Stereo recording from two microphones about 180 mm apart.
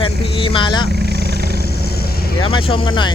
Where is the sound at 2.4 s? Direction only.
30° left (ahead or behind).